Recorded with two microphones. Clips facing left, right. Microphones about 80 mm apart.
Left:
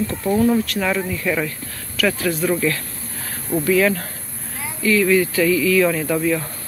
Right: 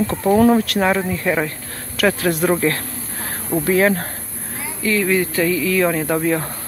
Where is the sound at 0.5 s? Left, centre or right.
Right.